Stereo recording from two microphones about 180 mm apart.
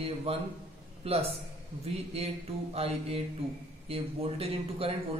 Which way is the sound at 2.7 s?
35° right (ahead or behind).